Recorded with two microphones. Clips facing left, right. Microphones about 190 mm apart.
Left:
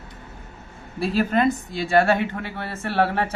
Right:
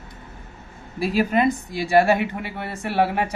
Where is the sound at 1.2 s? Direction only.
15° right (ahead or behind).